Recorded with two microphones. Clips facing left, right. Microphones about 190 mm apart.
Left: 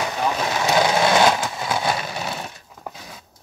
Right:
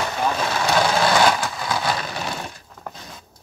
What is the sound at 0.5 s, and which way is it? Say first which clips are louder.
Vehicle: left 2 dB; 20° left (ahead or behind).